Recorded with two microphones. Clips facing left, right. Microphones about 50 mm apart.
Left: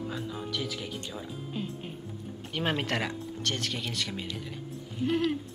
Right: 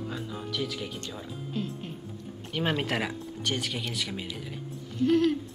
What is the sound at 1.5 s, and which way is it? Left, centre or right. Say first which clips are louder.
Music: right 3 dB; centre.